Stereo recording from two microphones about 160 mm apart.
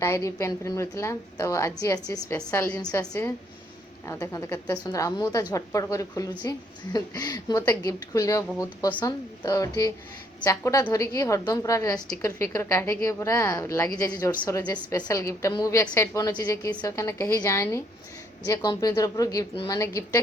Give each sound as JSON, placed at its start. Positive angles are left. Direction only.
{"t": 0.0, "sound": "a woman's voice", "side_deg": 20}
{"t": 2.5, "sound": "a woman's voice", "side_deg": 10}
{"t": 2.8, "sound": "a woman's voice", "side_deg": 25}
{"t": 14.3, "sound": "a woman's voice", "side_deg": 10}